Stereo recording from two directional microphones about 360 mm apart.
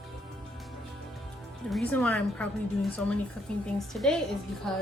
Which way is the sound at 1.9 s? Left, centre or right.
Centre.